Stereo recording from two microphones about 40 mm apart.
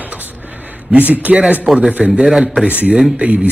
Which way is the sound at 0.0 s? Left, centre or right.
Right.